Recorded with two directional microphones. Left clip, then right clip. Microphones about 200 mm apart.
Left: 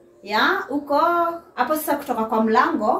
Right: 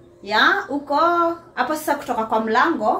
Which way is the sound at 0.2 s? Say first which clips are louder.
Right 3 dB; 25° right (ahead or behind).